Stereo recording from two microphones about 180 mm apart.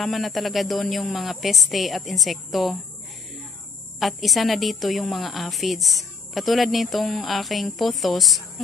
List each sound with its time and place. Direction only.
0.0 s a woman's voice: centre (ahead or behind)
4.0 s a woman's voice: centre (ahead or behind)